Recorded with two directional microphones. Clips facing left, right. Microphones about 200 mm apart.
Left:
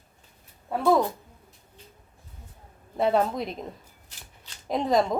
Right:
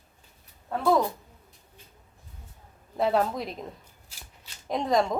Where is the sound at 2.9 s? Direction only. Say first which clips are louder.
Left 1 dB; centre (ahead or behind).